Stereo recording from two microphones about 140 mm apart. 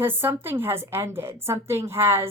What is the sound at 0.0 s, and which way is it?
A woman's voice, 15° right (ahead or behind).